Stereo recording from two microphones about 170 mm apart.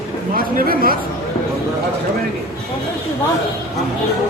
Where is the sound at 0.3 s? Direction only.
60° right (ahead or behind).